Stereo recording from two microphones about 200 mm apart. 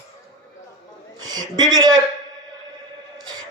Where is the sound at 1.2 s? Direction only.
20° right (ahead or behind).